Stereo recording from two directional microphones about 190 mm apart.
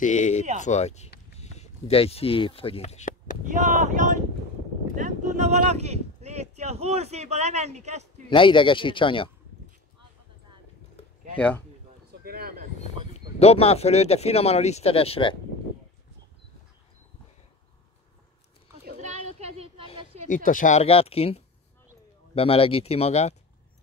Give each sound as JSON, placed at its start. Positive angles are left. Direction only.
{"t": 0.0, "sound": "speech", "side_deg": 40}
{"t": 3.4, "sound": "speech", "side_deg": -40}
{"t": 8.3, "sound": "speech", "side_deg": 25}
{"t": 11.3, "sound": "speech", "side_deg": 5}
{"t": 12.1, "sound": "a sound", "side_deg": -55}
{"t": 13.4, "sound": "speech", "side_deg": 30}
{"t": 18.9, "sound": "a sound", "side_deg": -40}
{"t": 20.2, "sound": "speech", "side_deg": 45}